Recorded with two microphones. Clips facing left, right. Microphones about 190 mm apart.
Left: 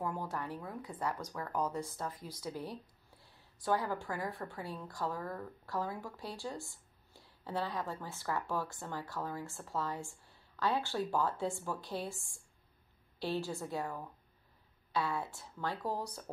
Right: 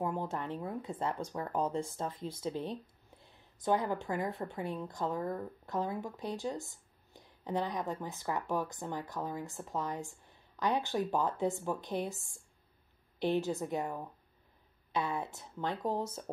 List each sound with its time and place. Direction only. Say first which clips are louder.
0.0 s speech: right 3 dB; 25° right (ahead or behind)